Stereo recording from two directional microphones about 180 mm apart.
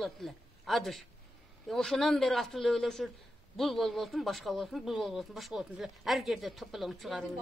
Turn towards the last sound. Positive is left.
turn(degrees=0)  # may be behind; listen again after turning